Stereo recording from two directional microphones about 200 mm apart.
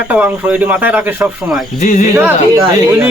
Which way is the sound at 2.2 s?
10° right (ahead or behind).